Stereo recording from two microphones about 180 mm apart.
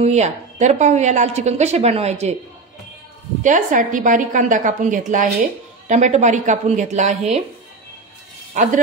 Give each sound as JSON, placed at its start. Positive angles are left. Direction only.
{"t": 0.0, "sound": "a woman's voice", "side_deg": -40}
{"t": 3.4, "sound": "a woman's voice", "side_deg": -45}